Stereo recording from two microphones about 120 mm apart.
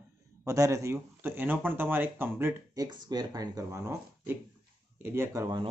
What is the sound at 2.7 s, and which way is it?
A man's voice, 35° right (ahead or behind).